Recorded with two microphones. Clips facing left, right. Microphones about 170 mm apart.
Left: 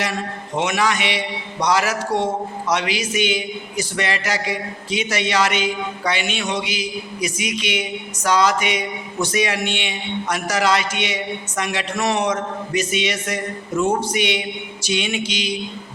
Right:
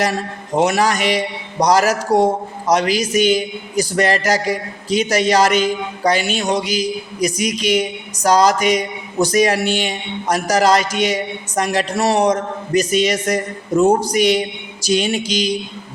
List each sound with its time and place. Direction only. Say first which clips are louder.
0.0 s a man's voice: right 5 dB; 40° right (ahead or behind)